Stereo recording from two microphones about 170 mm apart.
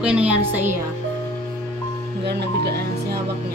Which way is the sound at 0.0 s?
5° right (ahead or behind).